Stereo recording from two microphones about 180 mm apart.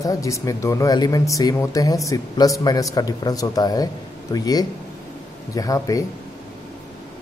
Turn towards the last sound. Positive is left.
turn(degrees=20)  # may be behind; listen again after turning